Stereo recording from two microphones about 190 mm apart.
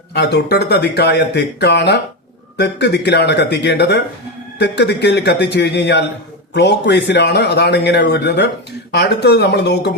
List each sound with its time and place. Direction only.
0.1 s a man's voice: 60° left (ahead or behind)